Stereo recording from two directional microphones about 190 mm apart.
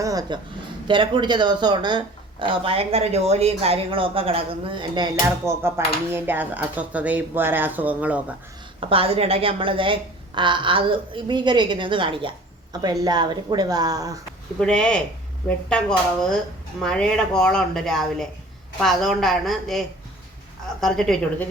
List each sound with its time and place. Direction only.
0.0 s a woman's voice: 20° right (ahead or behind)
5.5 s speech: 15° right (ahead or behind)
8.8 s speech: 30° right (ahead or behind)
14.6 s speech: 5° left (ahead or behind)
20.8 s speech: 5° left (ahead or behind)